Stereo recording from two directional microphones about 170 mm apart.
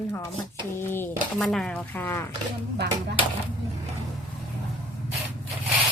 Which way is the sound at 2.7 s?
75° right (ahead or behind).